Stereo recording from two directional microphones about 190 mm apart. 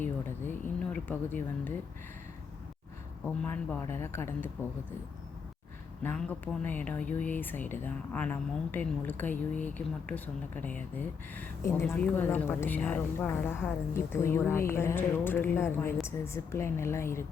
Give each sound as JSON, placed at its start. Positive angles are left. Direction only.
{"t": 0.0, "sound": "speech", "side_deg": 10}
{"t": 3.2, "sound": "speech", "side_deg": 10}
{"t": 6.0, "sound": "speech", "side_deg": 10}